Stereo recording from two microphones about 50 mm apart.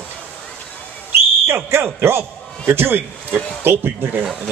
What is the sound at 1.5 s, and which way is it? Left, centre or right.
A man's voice, right.